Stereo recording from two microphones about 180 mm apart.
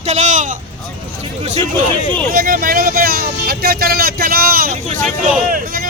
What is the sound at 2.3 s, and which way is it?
Speech, 50° right (ahead or behind).